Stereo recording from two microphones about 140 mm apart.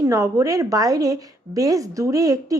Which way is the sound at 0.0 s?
20° right (ahead or behind).